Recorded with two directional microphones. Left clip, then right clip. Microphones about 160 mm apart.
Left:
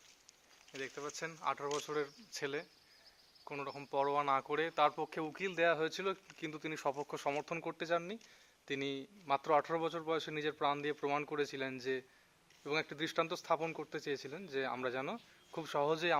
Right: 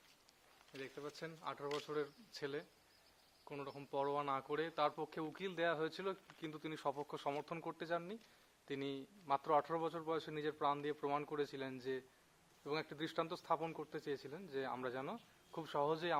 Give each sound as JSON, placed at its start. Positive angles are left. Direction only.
{"t": 0.8, "sound": "a man's voice", "side_deg": 25}